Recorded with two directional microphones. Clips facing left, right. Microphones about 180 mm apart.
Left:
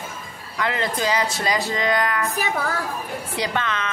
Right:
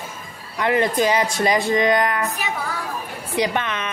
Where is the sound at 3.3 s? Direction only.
20° right (ahead or behind).